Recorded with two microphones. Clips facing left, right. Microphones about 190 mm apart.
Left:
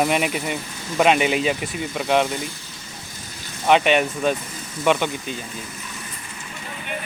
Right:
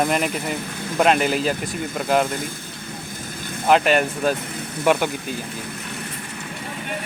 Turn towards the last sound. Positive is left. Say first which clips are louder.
# right 1 dB
turn(degrees=-5)  # may be behind; listen again after turning